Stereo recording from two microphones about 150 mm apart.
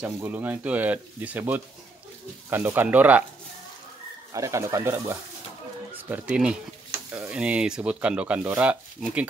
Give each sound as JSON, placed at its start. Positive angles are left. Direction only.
{"t": 0.0, "sound": "speech", "side_deg": -10}
{"t": 4.3, "sound": "speech", "side_deg": -20}